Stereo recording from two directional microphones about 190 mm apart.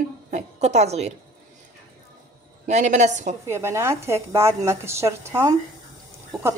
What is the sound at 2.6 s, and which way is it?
Speech, 40° right (ahead or behind).